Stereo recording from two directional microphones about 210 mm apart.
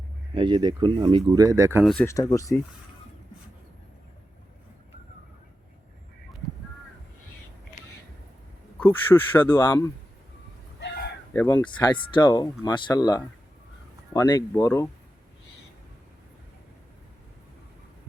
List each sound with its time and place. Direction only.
0.3 s speech: 20° right (ahead or behind)
1.8 s speech: centre (ahead or behind)
2.0 s speech: 15° left (ahead or behind)
8.8 s speech: 10° left (ahead or behind)
10.8 s a sound: 55° left (ahead or behind)
11.3 s speech: 10° left (ahead or behind)